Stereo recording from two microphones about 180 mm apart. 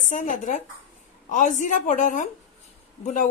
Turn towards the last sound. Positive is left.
turn(degrees=45)  # may be behind; listen again after turning